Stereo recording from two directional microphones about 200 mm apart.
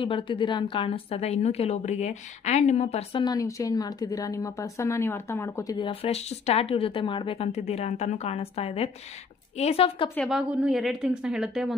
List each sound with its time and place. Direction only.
0.0 s a woman's voice: 25° left (ahead or behind)
10.1 s a woman's voice: centre (ahead or behind)